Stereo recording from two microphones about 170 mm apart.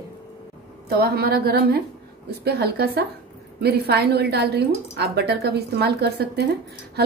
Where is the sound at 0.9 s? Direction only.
65° right (ahead or behind).